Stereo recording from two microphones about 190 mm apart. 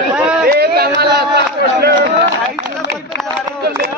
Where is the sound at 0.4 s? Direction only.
55° right (ahead or behind).